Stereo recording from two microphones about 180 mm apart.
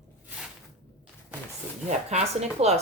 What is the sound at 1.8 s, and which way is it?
Speech, 40° right (ahead or behind).